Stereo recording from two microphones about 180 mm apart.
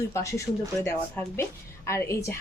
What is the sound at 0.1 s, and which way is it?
A woman's voice, 15° left (ahead or behind).